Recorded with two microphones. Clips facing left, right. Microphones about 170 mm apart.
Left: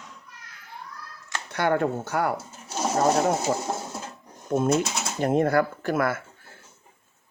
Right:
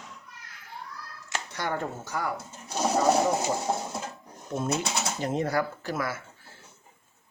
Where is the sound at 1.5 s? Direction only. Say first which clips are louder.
Left 9 dB; 65° left (ahead or behind).